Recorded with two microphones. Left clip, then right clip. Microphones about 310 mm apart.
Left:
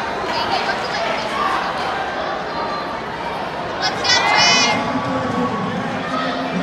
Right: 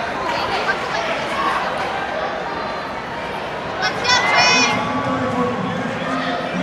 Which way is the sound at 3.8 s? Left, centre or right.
Centre.